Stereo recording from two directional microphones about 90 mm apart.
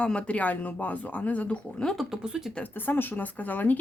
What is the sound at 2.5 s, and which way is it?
Speech, 20° left (ahead or behind).